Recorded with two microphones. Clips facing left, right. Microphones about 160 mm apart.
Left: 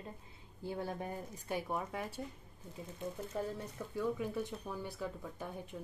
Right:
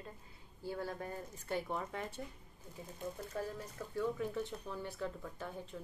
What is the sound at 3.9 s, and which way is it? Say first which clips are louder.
Speech: even; 10° left (ahead or behind).